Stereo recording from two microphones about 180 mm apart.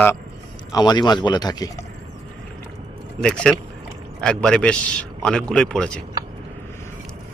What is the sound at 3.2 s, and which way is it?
Speech, 5° left (ahead or behind).